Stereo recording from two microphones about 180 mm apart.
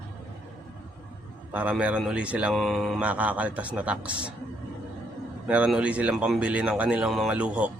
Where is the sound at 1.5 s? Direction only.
10° right (ahead or behind).